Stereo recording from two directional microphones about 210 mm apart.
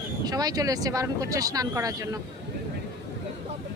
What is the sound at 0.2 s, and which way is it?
Speech, 20° right (ahead or behind).